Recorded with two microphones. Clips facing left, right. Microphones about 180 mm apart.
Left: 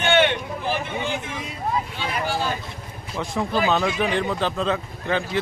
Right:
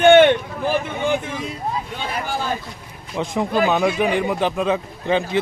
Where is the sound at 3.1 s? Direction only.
20° right (ahead or behind).